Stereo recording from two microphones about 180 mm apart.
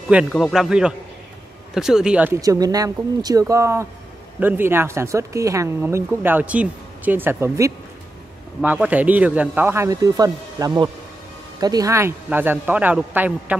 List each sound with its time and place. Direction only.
0.1 s a man's voice: 5° right (ahead or behind)